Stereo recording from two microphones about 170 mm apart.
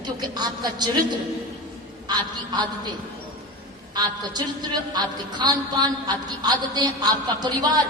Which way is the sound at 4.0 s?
25° right (ahead or behind).